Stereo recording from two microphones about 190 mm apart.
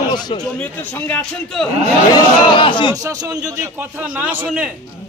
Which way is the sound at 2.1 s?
25° left (ahead or behind).